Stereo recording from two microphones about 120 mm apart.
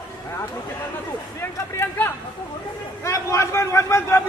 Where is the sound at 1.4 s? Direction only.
20° left (ahead or behind).